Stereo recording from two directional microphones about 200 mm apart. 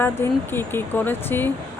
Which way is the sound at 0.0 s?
10° left (ahead or behind).